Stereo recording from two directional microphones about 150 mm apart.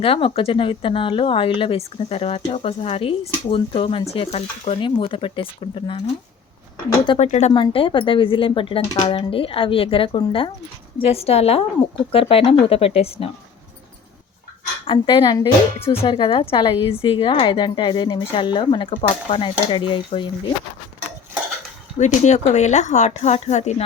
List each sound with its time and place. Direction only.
0.0 s speech: 40° left (ahead or behind)
7.2 s speech: 50° left (ahead or behind)
7.5 s speech: 35° left (ahead or behind)
14.8 s speech: 30° left (ahead or behind)
15.8 s speech: 40° left (ahead or behind)
21.9 s speech: 50° left (ahead or behind)